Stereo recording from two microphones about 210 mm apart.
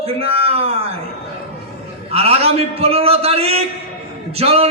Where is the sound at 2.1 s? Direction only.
30° right (ahead or behind).